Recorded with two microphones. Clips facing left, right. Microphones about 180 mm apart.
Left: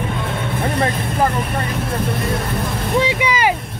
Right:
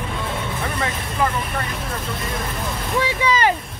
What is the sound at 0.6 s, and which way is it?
Vehicle, 35° left (ahead or behind).